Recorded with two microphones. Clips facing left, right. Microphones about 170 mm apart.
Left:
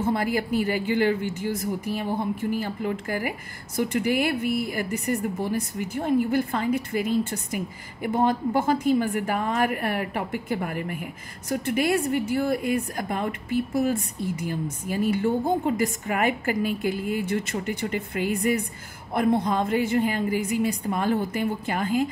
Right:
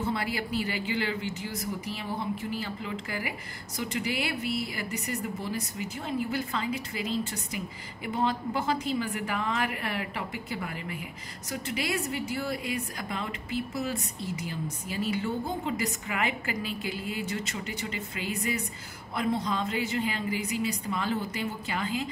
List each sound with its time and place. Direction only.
0.0 s a woman's voice: 45° left (ahead or behind)